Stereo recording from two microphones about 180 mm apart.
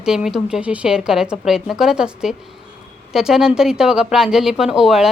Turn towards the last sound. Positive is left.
turn(degrees=-5)  # may be behind; listen again after turning